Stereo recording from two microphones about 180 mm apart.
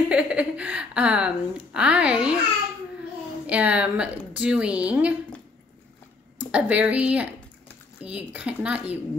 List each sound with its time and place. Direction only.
0.1 s a woman's voice: 5° right (ahead or behind)
3.4 s a woman's voice: 5° right (ahead or behind)
6.5 s a woman's voice: 10° right (ahead or behind)